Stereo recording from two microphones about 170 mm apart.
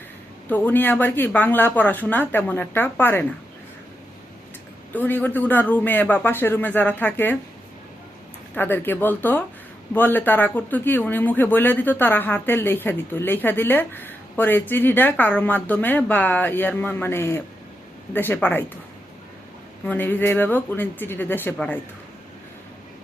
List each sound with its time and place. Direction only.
0.5 s speech: 10° left (ahead or behind)
4.9 s speech: 10° left (ahead or behind)
8.5 s speech: 10° left (ahead or behind)
19.8 s speech: 10° left (ahead or behind)